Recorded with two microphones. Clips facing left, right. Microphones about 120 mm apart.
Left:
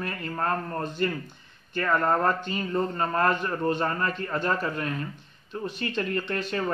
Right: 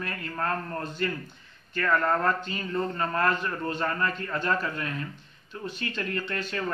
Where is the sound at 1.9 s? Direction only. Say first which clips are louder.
Left 2 dB; 10° left (ahead or behind).